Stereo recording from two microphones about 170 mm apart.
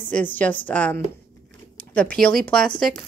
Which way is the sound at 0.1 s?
10° left (ahead or behind).